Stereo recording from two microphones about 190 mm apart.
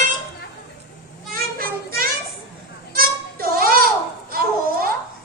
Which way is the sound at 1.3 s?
50° right (ahead or behind).